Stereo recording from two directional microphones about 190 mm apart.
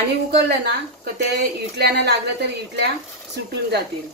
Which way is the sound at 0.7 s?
60° right (ahead or behind).